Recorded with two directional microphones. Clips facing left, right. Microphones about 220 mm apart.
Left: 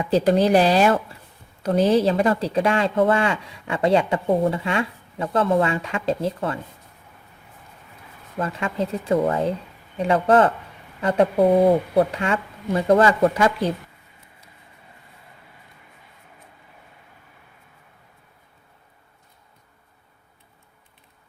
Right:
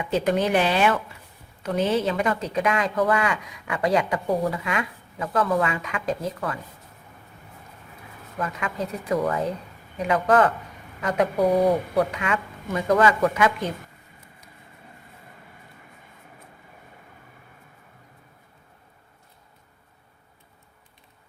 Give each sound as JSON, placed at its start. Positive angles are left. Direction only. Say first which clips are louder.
{"t": 0.0, "sound": "speech", "louder": "left 5 dB", "side_deg": 35}
{"t": 8.4, "sound": "speech", "louder": "left 4 dB", "side_deg": 30}